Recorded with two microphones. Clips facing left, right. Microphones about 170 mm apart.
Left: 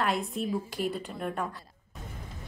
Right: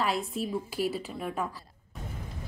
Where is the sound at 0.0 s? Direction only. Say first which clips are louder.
Even; centre (ahead or behind).